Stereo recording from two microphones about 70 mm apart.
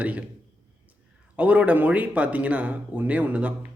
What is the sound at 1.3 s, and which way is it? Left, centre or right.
Speech, centre.